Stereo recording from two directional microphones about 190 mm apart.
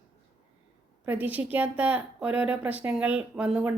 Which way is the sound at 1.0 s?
10° right (ahead or behind).